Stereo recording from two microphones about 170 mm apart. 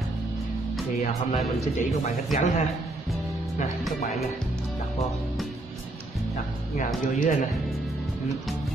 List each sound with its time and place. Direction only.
1.0 s a man's voice: 40° left (ahead or behind)
6.3 s speech: 50° left (ahead or behind)